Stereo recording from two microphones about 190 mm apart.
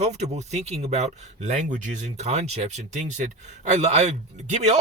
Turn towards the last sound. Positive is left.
turn(degrees=-35)  # may be behind; listen again after turning